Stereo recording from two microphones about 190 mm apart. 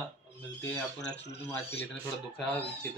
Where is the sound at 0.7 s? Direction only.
15° left (ahead or behind).